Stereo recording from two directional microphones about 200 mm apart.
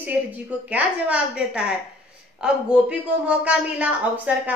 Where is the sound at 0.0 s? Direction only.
10° right (ahead or behind).